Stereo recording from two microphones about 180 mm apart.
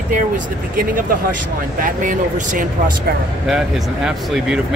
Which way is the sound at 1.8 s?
45° right (ahead or behind).